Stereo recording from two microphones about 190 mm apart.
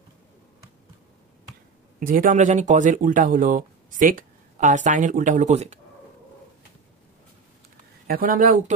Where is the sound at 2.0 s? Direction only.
45° right (ahead or behind).